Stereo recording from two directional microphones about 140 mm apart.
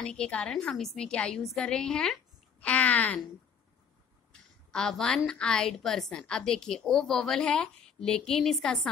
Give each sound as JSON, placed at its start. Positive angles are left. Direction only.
{"t": 0.0, "sound": "a woman's voice", "side_deg": 5}
{"t": 4.3, "sound": "a woman's voice", "side_deg": 5}